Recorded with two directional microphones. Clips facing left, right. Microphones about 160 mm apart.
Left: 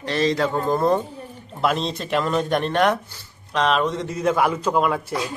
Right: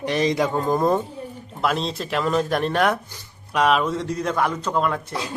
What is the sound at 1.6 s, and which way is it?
A man's voice, centre (ahead or behind).